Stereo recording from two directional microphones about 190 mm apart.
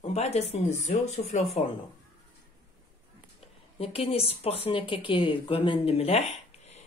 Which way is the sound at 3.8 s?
30° left (ahead or behind).